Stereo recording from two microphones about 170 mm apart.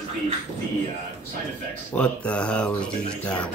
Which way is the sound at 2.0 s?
5° left (ahead or behind).